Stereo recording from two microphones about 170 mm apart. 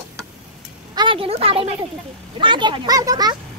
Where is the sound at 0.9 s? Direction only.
30° right (ahead or behind).